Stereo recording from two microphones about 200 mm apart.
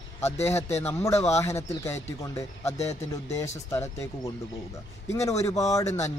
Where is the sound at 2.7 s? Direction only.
35° left (ahead or behind).